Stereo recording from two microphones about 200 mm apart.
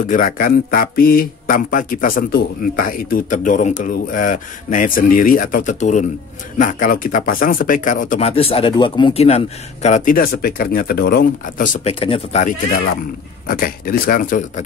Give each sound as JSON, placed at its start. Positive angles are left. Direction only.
{"t": 0.0, "sound": "speech", "side_deg": 40}
{"t": 11.9, "sound": "speech", "side_deg": 30}